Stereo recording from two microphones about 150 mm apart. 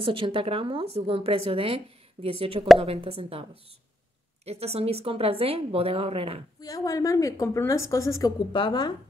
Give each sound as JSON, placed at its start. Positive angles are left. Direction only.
{"t": 0.0, "sound": "a woman's voice", "side_deg": -35}
{"t": 4.5, "sound": "a woman's voice", "side_deg": -45}
{"t": 6.6, "sound": "a woman's voice", "side_deg": 25}